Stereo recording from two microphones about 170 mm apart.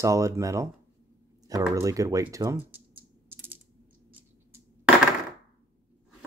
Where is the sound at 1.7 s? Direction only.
20° right (ahead or behind).